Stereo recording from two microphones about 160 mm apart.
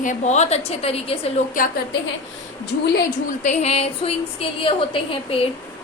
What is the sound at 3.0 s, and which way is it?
A woman's voice, 50° left (ahead or behind).